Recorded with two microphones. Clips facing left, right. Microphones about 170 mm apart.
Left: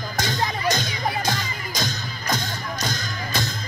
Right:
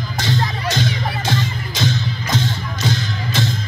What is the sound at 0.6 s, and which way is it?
Music, 45° left (ahead or behind).